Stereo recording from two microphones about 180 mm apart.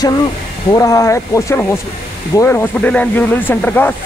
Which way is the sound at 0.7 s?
20° left (ahead or behind).